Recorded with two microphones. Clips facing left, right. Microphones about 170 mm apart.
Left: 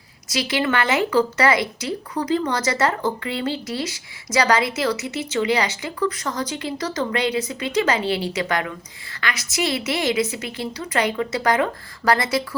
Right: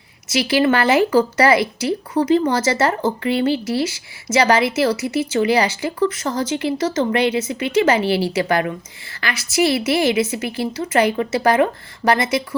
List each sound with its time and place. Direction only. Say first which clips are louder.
0.3 s speech: right 6 dB; 30° right (ahead or behind)